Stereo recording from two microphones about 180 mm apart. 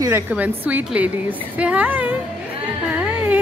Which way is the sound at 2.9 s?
10° right (ahead or behind).